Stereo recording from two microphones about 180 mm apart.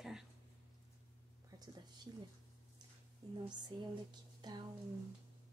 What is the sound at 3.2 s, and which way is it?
Speech, 20° right (ahead or behind).